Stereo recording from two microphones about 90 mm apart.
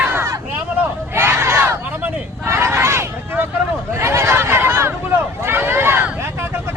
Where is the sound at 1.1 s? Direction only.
30° right (ahead or behind).